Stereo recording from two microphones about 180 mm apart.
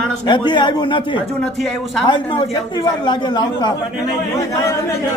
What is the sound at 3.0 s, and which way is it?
Speech, 25° left (ahead or behind).